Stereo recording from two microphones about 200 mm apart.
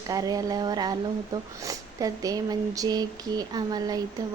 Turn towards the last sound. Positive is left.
turn(degrees=-20)  # may be behind; listen again after turning